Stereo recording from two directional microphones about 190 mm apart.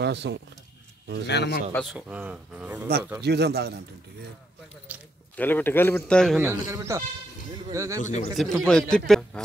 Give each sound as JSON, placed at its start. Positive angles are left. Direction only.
{"t": 0.0, "sound": "speech", "side_deg": -65}
{"t": 1.2, "sound": "a man's voice", "side_deg": 60}
{"t": 1.7, "sound": "a man's voice", "side_deg": 5}
{"t": 2.0, "sound": "speech", "side_deg": -5}
{"t": 3.2, "sound": "speech", "side_deg": -60}
{"t": 4.9, "sound": "squish", "side_deg": -10}
{"t": 5.3, "sound": "a man's voice", "side_deg": 10}
{"t": 6.7, "sound": "speech", "side_deg": -15}
{"t": 8.0, "sound": "a man's voice", "side_deg": 35}
{"t": 8.4, "sound": "a man's voice", "side_deg": 0}